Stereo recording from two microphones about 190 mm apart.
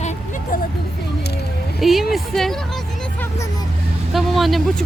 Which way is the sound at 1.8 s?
Centre (ahead or behind).